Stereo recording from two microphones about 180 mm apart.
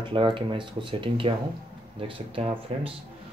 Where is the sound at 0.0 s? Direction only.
30° right (ahead or behind).